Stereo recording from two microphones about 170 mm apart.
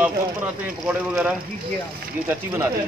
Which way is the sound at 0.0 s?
10° right (ahead or behind).